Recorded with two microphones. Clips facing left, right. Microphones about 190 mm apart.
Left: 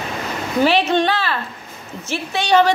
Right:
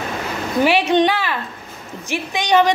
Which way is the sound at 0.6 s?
10° right (ahead or behind).